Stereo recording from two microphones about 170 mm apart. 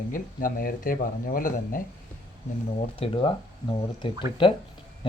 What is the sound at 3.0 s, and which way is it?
Speech, 30° left (ahead or behind).